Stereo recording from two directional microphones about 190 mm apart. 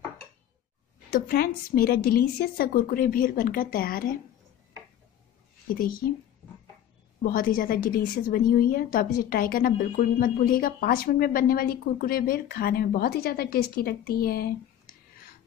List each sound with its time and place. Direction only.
1.1 s a woman's voice: 50° left (ahead or behind)
5.8 s a woman's voice: 50° left (ahead or behind)
7.2 s a woman's voice: 50° left (ahead or behind)